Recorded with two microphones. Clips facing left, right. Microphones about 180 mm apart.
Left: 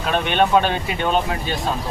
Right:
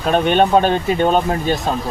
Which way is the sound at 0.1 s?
40° right (ahead or behind).